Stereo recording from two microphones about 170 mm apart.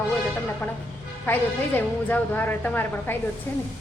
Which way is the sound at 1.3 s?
10° left (ahead or behind).